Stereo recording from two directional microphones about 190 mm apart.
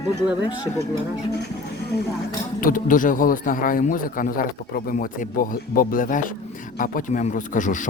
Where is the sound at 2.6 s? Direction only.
45° left (ahead or behind).